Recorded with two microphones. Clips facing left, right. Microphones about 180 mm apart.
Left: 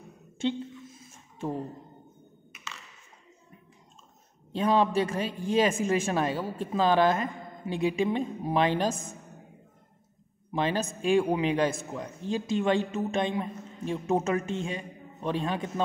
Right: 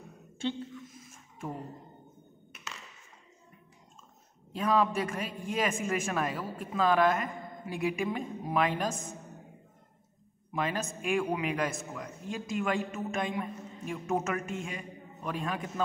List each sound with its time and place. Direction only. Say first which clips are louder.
0.4 s a sound: left 4 dB; 25° left (ahead or behind)
4.5 s a man's voice: left 3 dB; 30° left (ahead or behind)
10.5 s a man's voice: left 4 dB; 30° left (ahead or behind)